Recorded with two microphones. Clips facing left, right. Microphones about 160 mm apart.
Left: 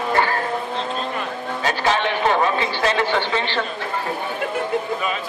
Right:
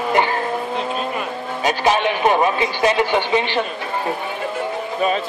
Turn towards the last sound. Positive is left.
turn(degrees=-15)  # may be behind; listen again after turning